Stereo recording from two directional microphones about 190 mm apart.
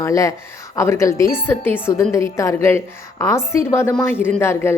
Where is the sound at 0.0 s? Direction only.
15° left (ahead or behind).